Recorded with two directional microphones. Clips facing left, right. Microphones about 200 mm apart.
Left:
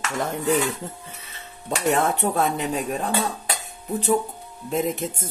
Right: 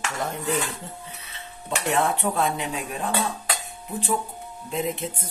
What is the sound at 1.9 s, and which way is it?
Speech, 40° left (ahead or behind).